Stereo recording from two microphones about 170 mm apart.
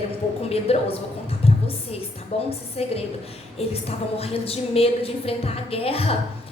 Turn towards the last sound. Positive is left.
turn(degrees=35)  # may be behind; listen again after turning